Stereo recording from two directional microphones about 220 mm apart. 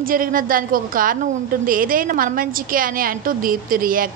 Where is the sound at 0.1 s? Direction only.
40° right (ahead or behind).